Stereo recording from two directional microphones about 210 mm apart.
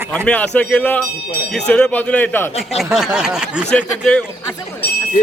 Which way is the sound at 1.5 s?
5° left (ahead or behind).